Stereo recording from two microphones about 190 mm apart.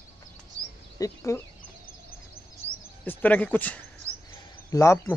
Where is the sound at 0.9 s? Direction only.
15° left (ahead or behind).